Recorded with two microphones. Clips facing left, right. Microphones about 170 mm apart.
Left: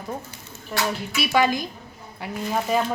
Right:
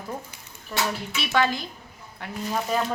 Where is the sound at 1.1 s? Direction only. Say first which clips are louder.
Left 4 dB; 10° left (ahead or behind).